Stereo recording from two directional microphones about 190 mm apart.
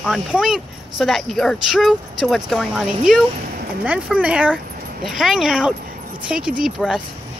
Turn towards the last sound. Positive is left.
turn(degrees=-5)  # may be behind; listen again after turning